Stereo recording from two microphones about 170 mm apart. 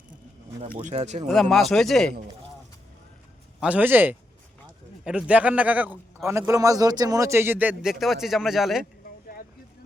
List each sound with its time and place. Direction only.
0.6 s speech: 45° right (ahead or behind)
1.3 s speech: centre (ahead or behind)
3.6 s a man's voice: 10° right (ahead or behind)